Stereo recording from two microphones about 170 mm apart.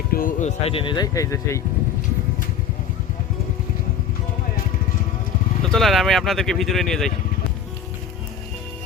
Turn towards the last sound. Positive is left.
turn(degrees=5)  # may be behind; listen again after turning